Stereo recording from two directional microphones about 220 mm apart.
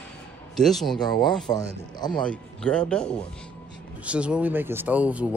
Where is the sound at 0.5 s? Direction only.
Centre (ahead or behind).